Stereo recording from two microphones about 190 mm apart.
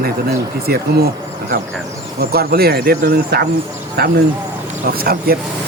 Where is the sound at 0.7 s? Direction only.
55° right (ahead or behind).